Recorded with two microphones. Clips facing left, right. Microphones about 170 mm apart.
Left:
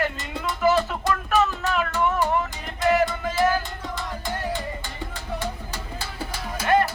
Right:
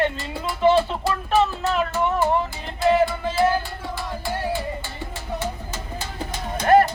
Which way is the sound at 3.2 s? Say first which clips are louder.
Right 2 dB; 30° right (ahead or behind).